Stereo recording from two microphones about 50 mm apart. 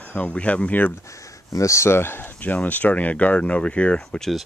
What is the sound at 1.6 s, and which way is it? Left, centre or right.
Speech, left.